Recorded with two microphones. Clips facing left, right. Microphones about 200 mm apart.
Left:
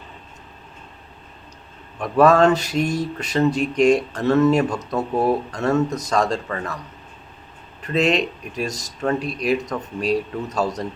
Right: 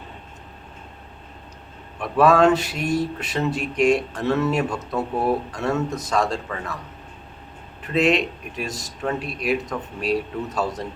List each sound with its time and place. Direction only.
2.0 s speech: 5° right (ahead or behind)
7.8 s speech: 5° right (ahead or behind)
8.5 s speech: 40° left (ahead or behind)
9.0 s speech: 5° right (ahead or behind)